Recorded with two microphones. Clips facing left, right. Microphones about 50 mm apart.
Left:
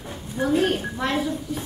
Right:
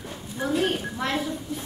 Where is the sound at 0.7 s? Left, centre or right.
Centre.